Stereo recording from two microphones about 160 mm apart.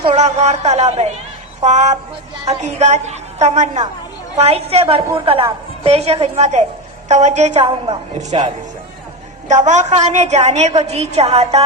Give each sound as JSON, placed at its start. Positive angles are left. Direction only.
{"t": 0.1, "sound": "a woman's voice", "side_deg": -45}
{"t": 9.5, "sound": "a woman's voice", "side_deg": -45}